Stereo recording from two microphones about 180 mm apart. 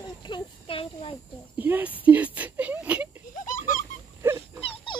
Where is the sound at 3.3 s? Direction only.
45° left (ahead or behind).